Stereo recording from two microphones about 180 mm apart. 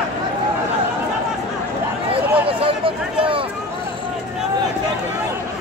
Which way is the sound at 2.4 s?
30° right (ahead or behind).